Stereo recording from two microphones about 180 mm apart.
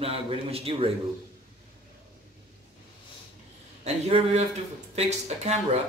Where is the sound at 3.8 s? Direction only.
35° right (ahead or behind).